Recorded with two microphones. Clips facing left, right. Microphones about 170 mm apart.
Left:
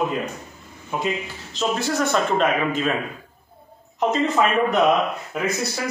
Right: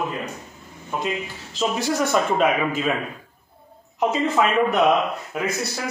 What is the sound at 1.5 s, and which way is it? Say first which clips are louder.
Speech: even; 10° right (ahead or behind).